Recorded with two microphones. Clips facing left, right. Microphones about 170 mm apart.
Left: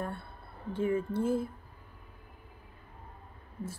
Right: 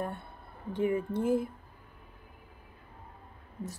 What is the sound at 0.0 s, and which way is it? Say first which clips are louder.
Speech: right 1 dB; 15° right (ahead or behind).